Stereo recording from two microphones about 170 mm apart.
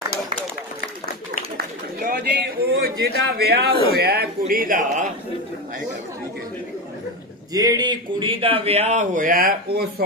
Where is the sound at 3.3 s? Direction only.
65° right (ahead or behind); by 5.1 s 50° right (ahead or behind).